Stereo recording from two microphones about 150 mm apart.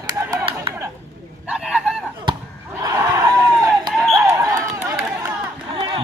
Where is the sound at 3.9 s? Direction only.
Centre (ahead or behind).